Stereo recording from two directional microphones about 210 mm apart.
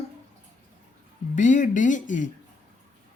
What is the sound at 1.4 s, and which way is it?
Speech, 35° left (ahead or behind).